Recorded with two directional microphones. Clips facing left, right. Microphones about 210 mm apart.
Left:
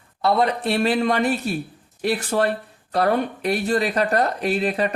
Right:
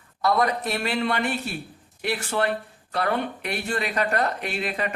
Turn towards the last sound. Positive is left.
turn(degrees=35)  # may be behind; listen again after turning